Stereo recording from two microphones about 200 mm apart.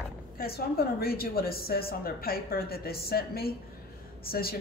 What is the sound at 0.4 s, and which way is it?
A woman's voice, 50° left (ahead or behind).